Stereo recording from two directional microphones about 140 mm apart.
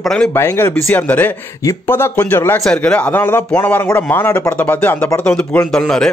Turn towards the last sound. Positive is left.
turn(degrees=5)  # may be behind; listen again after turning